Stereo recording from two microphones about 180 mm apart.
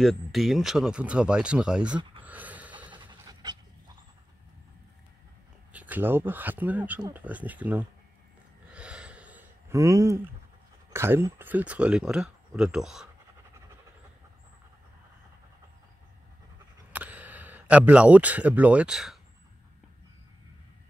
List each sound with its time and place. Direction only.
0.0 s speech: centre (ahead or behind)
2.2 s a sound: 10° right (ahead or behind)
2.9 s pant: 25° right (ahead or behind)
5.7 s speech: 10° right (ahead or behind)
8.7 s gasp: 5° right (ahead or behind)
10.9 s speech: 15° right (ahead or behind)
16.9 s speech: 10° right (ahead or behind)